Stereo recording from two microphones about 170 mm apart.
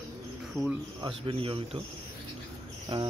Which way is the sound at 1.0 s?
30° right (ahead or behind).